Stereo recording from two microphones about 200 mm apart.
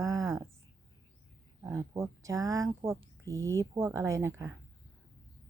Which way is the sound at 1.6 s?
15° right (ahead or behind).